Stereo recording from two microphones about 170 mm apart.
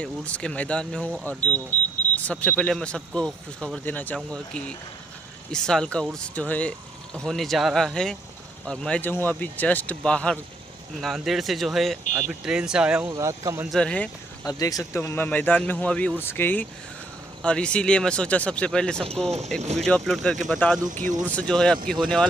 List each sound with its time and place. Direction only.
0.0 s speech: 5° left (ahead or behind)
13.1 s speech: 20° right (ahead or behind)
13.7 s speech: 5° left (ahead or behind)
14.4 s speech: 20° left (ahead or behind); by 19.0 s 5° left (ahead or behind)
19.6 s speech: 40° right (ahead or behind)
19.9 s speech: 5° left (ahead or behind)
20.9 s speech: 50° right (ahead or behind)
21.4 s speech: 5° left (ahead or behind)